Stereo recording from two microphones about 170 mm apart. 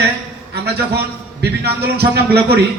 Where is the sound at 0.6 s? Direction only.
75° right (ahead or behind).